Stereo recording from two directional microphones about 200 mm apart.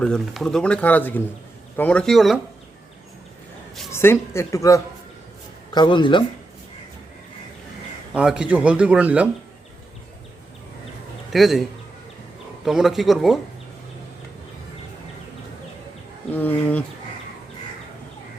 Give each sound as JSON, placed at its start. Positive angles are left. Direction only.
{"t": 0.0, "sound": "speech", "side_deg": 5}
{"t": 3.9, "sound": "a woman's voice", "side_deg": 10}
{"t": 8.1, "sound": "speech", "side_deg": -5}
{"t": 11.3, "sound": "speech", "side_deg": 0}
{"t": 12.6, "sound": "speech", "side_deg": 0}
{"t": 16.3, "sound": "a woman's voice", "side_deg": 10}